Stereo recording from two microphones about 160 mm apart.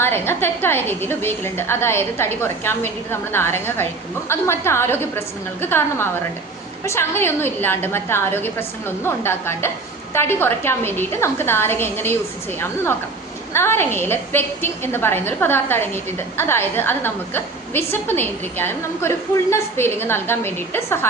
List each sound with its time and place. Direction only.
0.0 s a woman's voice: 15° left (ahead or behind)